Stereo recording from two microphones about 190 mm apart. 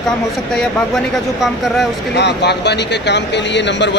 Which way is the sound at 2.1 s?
60° left (ahead or behind).